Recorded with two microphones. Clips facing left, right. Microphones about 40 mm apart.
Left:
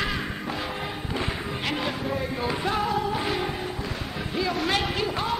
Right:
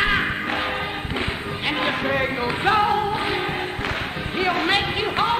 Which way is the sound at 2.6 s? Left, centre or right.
Right.